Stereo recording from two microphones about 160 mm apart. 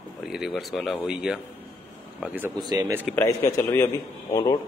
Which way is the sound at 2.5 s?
25° right (ahead or behind).